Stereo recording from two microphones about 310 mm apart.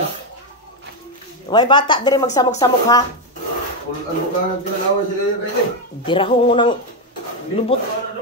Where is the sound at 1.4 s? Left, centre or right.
Centre.